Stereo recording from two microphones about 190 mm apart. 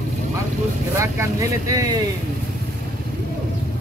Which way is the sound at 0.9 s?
15° right (ahead or behind).